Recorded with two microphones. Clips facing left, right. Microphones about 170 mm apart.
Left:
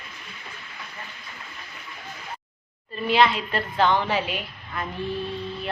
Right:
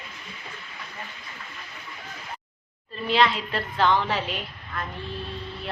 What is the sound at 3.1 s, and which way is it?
A woman's voice, 5° left (ahead or behind).